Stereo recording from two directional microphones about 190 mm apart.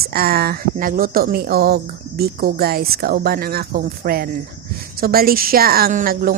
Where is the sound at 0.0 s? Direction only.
55° right (ahead or behind).